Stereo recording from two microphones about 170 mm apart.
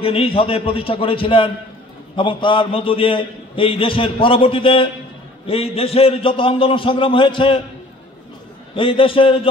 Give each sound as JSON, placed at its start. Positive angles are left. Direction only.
{"t": 0.0, "sound": "a man's voice", "side_deg": 35}
{"t": 8.7, "sound": "a man's voice", "side_deg": 30}